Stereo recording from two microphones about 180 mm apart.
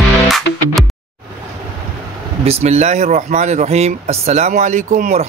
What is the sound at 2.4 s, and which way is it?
Speech, 35° right (ahead or behind).